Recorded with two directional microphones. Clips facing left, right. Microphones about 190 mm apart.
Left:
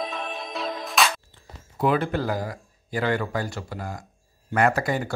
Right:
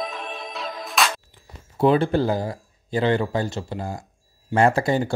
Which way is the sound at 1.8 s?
30° right (ahead or behind).